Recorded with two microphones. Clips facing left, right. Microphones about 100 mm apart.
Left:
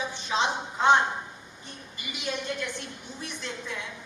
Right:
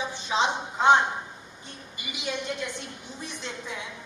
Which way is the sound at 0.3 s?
20° right (ahead or behind).